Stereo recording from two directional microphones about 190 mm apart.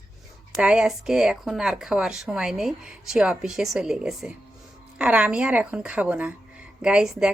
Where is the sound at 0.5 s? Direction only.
5° right (ahead or behind).